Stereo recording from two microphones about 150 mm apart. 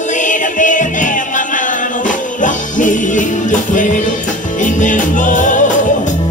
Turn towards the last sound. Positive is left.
turn(degrees=60)  # may be behind; listen again after turning